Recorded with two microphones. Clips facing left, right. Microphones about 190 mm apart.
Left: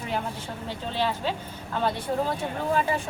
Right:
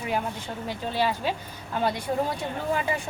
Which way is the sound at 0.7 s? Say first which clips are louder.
Right 2 dB; 10° right (ahead or behind).